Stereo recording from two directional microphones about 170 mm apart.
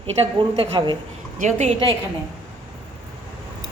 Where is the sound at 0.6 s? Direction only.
30° right (ahead or behind).